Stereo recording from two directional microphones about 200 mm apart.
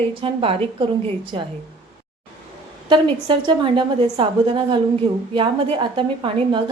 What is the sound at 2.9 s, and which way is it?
A woman's voice, 25° right (ahead or behind).